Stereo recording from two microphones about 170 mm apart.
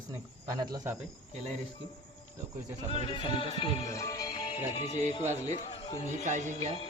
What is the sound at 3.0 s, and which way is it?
Music, 30° left (ahead or behind).